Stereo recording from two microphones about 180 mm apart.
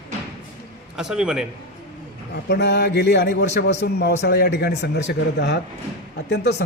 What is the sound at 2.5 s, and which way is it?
Speech, 70° left (ahead or behind).